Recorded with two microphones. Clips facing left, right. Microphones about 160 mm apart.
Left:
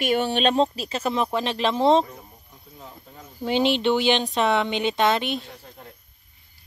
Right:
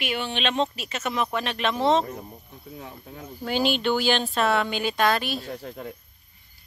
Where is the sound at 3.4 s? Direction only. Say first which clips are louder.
Left 3 dB; 25° left (ahead or behind).